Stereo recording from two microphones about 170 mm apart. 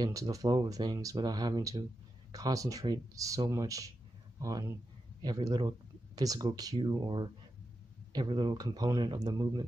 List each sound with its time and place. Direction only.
0.0 s speech: 20° right (ahead or behind)